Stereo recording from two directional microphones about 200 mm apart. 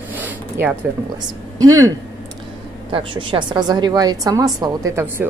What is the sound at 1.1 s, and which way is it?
A woman's voice, 20° right (ahead or behind).